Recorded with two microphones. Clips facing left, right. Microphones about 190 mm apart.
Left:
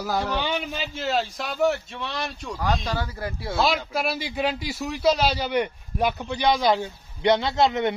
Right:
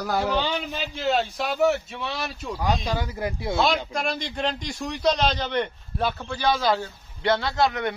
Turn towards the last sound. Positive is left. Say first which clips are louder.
# left 2 dB
turn(degrees=20)  # may be behind; listen again after turning